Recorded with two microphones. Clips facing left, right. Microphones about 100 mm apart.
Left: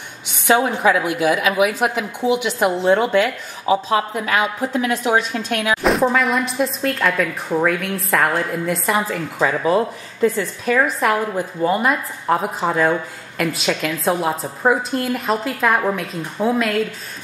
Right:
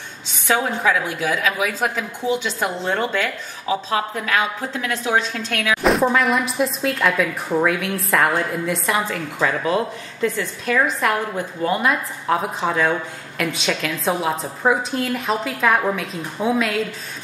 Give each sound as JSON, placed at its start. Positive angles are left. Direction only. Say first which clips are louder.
{"t": 0.5, "sound": "speech", "louder": "left 4 dB", "side_deg": 20}
{"t": 3.6, "sound": "speech", "louder": "left 4 dB", "side_deg": 25}
{"t": 4.1, "sound": "speech", "louder": "left 2 dB", "side_deg": 15}
{"t": 5.8, "sound": "a woman's voice", "louder": "right 1 dB", "side_deg": 0}